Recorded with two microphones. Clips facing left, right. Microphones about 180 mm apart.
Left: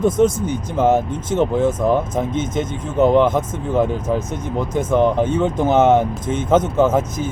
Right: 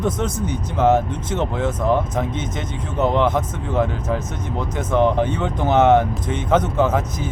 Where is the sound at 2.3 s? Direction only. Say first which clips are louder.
Left 6 dB; 50° left (ahead or behind).